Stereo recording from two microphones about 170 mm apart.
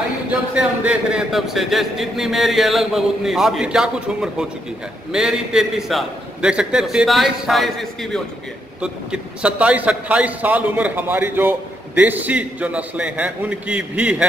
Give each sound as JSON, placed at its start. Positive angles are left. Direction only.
{"t": 0.3, "sound": "a man's voice", "side_deg": -5}